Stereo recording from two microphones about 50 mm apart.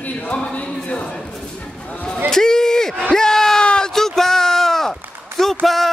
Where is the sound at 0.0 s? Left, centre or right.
Left.